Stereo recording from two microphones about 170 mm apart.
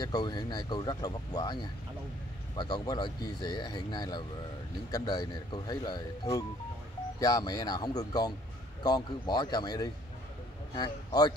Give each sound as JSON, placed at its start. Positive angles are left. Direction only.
{"t": 0.0, "sound": "speech", "side_deg": 25}